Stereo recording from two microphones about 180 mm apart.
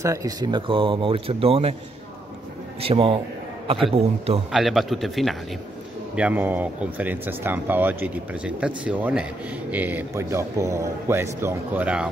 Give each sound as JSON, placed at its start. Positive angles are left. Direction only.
{"t": 0.0, "sound": "speech", "side_deg": -20}
{"t": 2.8, "sound": "a man's voice", "side_deg": -30}
{"t": 4.5, "sound": "speech", "side_deg": 0}